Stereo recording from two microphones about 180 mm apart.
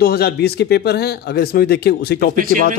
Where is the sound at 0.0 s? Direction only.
60° left (ahead or behind).